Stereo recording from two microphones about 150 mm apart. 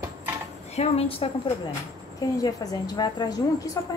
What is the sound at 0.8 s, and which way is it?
Speech, 40° left (ahead or behind).